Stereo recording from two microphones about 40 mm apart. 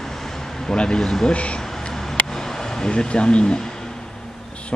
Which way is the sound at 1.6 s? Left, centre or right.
Centre.